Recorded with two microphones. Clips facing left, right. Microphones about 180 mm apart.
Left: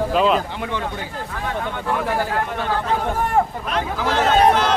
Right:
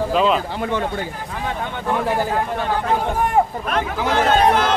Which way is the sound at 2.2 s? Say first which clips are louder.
Right 2 dB; 15° right (ahead or behind).